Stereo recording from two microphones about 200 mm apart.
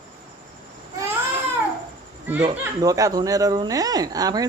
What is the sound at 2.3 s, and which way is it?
Speech, 20° right (ahead or behind).